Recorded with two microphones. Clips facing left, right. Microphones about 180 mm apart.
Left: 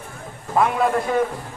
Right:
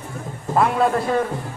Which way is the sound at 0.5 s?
Centre (ahead or behind).